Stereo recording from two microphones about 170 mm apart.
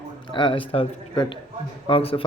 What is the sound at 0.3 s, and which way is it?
A man's voice, 30° left (ahead or behind).